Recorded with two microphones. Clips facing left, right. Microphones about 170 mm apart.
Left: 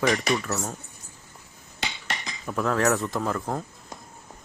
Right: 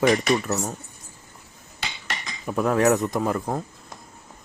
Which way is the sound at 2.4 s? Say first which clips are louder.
Right 4 dB; 15° right (ahead or behind).